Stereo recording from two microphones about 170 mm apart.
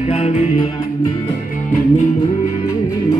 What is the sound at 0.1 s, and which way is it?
Music, 40° left (ahead or behind).